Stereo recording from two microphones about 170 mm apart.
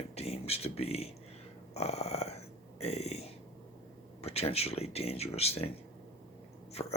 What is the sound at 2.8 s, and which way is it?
Burping, 40° left (ahead or behind).